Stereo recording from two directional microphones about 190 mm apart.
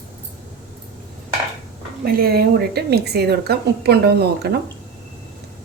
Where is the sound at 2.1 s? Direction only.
50° right (ahead or behind).